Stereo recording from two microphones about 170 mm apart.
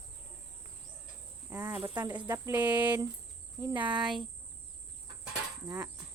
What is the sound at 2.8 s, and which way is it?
Speech, 25° right (ahead or behind).